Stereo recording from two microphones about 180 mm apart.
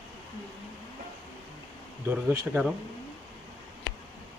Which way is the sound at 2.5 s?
5° right (ahead or behind).